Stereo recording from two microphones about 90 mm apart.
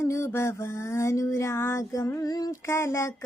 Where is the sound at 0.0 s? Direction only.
30° left (ahead or behind); by 2.6 s 45° left (ahead or behind).